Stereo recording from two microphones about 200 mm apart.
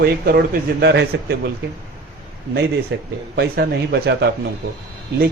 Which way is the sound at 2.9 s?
60° right (ahead or behind).